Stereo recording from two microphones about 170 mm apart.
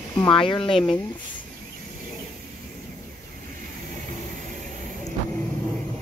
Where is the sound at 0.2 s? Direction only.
30° left (ahead or behind).